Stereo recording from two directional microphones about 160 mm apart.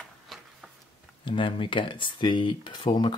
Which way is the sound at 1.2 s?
30° left (ahead or behind).